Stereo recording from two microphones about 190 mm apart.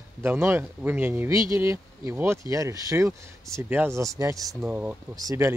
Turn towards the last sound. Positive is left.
turn(degrees=-15)  # may be behind; listen again after turning